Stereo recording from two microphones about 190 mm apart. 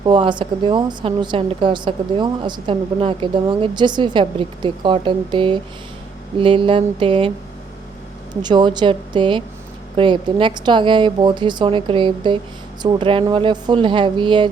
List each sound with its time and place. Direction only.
0.0 s a woman's voice: 25° right (ahead or behind)
8.4 s a woman's voice: 25° right (ahead or behind)